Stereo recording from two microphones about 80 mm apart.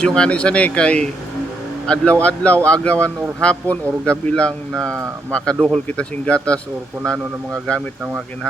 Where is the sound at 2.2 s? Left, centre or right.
Centre.